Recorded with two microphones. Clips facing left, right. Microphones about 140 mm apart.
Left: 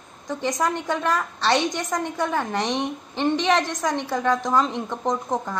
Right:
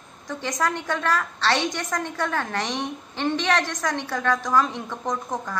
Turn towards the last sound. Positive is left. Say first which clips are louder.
# left 3 dB
turn(degrees=20)  # may be behind; listen again after turning